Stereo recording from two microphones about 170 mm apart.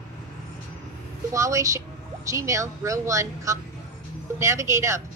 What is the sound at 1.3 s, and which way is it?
Speech, 20° right (ahead or behind).